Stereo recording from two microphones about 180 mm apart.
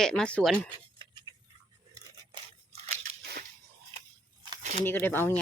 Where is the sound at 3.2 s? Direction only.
60° right (ahead or behind).